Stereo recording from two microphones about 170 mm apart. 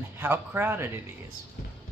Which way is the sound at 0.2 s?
10° right (ahead or behind).